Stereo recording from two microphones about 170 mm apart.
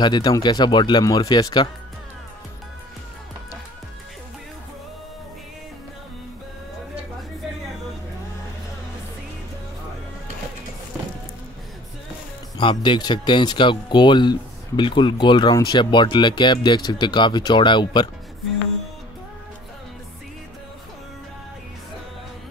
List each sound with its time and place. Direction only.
0.0 s speech: 25° left (ahead or behind)
12.5 s speech: 30° left (ahead or behind)